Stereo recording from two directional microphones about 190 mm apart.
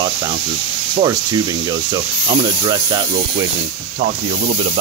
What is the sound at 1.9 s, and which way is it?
Speech, 20° right (ahead or behind).